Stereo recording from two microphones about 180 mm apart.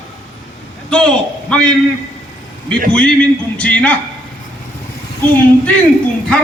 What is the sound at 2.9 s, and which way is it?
A man's voice, 5° left (ahead or behind).